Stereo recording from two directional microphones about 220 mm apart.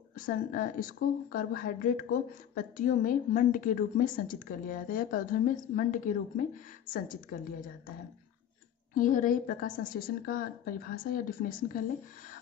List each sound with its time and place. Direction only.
0.1 s a woman's voice: 40° left (ahead or behind)
8.9 s a woman's voice: 35° left (ahead or behind)